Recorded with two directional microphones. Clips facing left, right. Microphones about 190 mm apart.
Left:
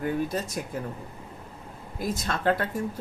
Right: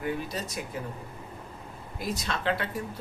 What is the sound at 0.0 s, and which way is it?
Speech, 50° left (ahead or behind).